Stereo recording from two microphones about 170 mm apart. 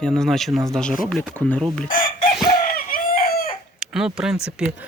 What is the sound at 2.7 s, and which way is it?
Chicken, 60° left (ahead or behind).